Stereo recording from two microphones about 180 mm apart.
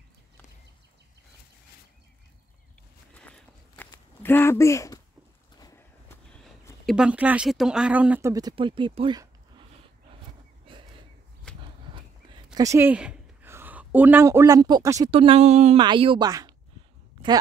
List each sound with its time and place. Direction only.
3.2 s a sound: 10° left (ahead or behind)
6.9 s speech: 5° right (ahead or behind); by 9.2 s 30° right (ahead or behind)
12.5 s a woman's voice: 15° right (ahead or behind)
15.0 s speech: 30° right (ahead or behind)
15.8 s speech: 25° right (ahead or behind)